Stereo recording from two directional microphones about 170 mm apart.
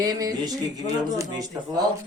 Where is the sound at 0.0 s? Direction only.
20° right (ahead or behind).